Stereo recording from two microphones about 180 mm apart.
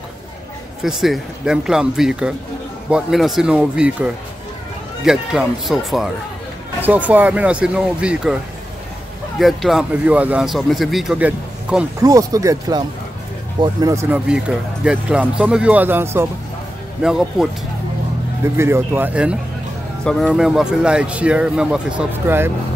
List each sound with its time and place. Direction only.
0.8 s speech: centre (ahead or behind)
9.4 s speech: centre (ahead or behind)
12.0 s speech: 20° right (ahead or behind); by 17.5 s 5° right (ahead or behind)
18.6 s speech: 10° right (ahead or behind)